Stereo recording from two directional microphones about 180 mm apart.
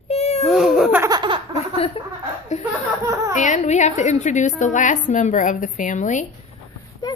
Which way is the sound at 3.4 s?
40° left (ahead or behind).